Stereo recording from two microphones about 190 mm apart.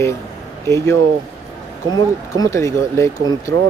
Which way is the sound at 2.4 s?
15° left (ahead or behind).